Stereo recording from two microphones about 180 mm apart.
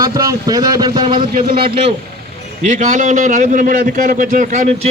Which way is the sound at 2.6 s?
40° right (ahead or behind).